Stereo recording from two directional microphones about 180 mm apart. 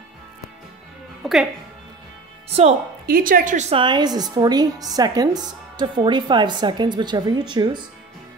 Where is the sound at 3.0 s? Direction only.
55° right (ahead or behind).